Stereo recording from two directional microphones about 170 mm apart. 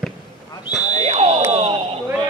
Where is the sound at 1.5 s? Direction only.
35° right (ahead or behind).